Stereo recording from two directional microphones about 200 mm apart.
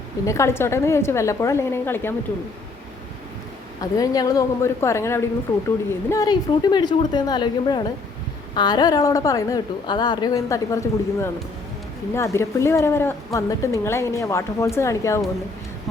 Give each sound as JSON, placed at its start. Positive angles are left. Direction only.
{"t": 0.3, "sound": "a woman's voice", "side_deg": 15}
{"t": 3.8, "sound": "a woman's voice", "side_deg": 20}